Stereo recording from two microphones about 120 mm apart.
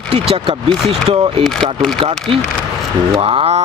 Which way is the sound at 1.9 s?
50° right (ahead or behind).